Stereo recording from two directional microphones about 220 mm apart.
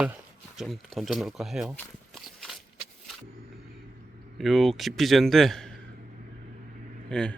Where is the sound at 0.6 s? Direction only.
Centre (ahead or behind).